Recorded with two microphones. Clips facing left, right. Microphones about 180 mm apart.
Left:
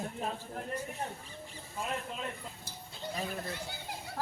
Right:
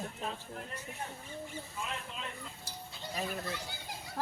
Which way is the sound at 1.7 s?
45° left (ahead or behind).